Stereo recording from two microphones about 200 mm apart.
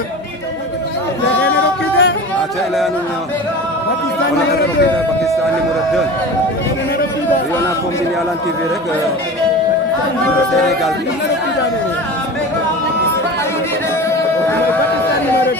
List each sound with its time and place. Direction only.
1.5 s music: 60° left (ahead or behind)